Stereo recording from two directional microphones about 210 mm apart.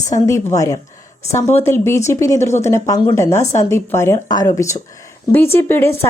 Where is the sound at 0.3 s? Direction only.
15° left (ahead or behind).